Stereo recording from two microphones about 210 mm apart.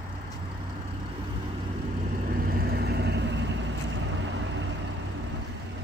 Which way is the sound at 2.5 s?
45° right (ahead or behind).